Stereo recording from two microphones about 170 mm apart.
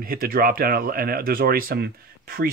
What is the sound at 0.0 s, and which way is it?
Speech, 60° right (ahead or behind).